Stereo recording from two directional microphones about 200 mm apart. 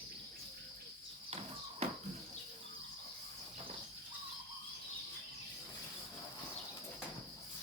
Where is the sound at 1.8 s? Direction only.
35° right (ahead or behind).